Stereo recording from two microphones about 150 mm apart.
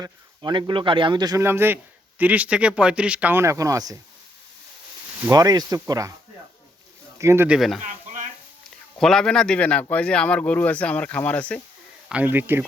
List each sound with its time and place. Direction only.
0.0 s a man's voice: 30° right (ahead or behind)
5.3 s speech: 25° right (ahead or behind)
7.2 s speech: 20° right (ahead or behind)
7.4 s speech: 5° right (ahead or behind)
7.8 s a sound: 60° right (ahead or behind)
9.0 s speech: 5° left (ahead or behind)
12.0 s a man's voice: 10° right (ahead or behind)